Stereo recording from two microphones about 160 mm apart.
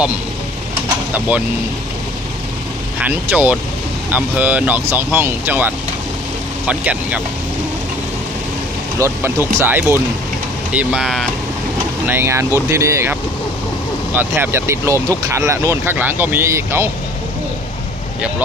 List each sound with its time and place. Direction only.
3.0 s speech: 10° right (ahead or behind)
6.7 s speech: 10° right (ahead or behind)
9.0 s speech: 15° right (ahead or behind)
12.1 s speech: 15° right (ahead or behind)